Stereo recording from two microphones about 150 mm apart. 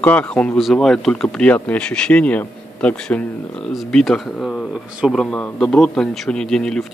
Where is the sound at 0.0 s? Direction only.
10° left (ahead or behind).